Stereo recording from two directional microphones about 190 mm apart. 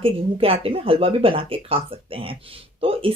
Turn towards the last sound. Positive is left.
turn(degrees=-30)  # may be behind; listen again after turning